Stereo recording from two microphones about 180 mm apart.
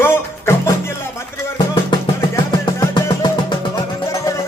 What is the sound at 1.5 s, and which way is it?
Music, 25° left (ahead or behind).